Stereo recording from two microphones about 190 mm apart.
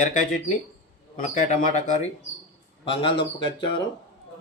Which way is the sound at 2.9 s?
25° left (ahead or behind).